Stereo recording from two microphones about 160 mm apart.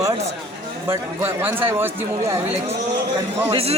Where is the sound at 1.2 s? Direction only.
15° right (ahead or behind).